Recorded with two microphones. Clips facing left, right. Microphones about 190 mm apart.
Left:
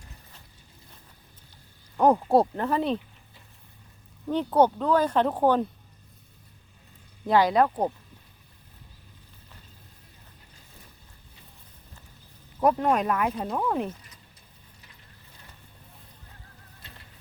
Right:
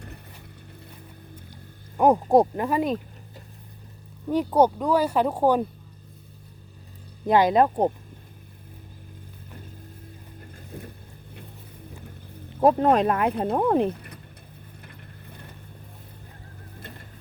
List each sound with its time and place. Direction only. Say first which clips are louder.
2.0 s speech: right 2 dB; 10° right (ahead or behind)
4.3 s speech: right 2 dB; 10° right (ahead or behind)
7.3 s speech: right 2 dB; 20° right (ahead or behind)
10.4 s boat: right 18 dB; 60° right (ahead or behind)
12.8 s speech: right 4 dB; 30° right (ahead or behind)
13.2 s speech: right 5 dB; 60° right (ahead or behind)
13.8 s a sound: right 8 dB; 60° right (ahead or behind)